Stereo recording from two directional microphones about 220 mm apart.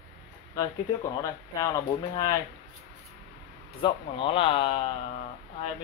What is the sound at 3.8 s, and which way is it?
Speech, 25° left (ahead or behind).